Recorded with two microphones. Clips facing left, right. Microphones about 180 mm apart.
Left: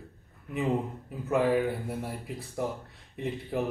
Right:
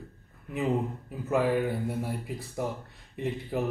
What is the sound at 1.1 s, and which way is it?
Speech, centre (ahead or behind).